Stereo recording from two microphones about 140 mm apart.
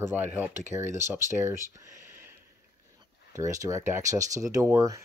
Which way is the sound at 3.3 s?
20° right (ahead or behind).